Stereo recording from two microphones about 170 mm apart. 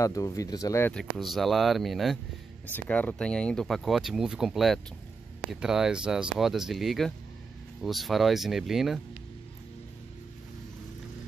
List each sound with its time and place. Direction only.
0.0 s speech: 20° left (ahead or behind)
0.9 s speech: centre (ahead or behind)